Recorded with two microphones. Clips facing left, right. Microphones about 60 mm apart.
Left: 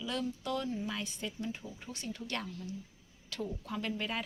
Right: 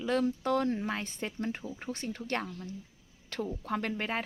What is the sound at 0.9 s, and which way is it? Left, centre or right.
Speech, right.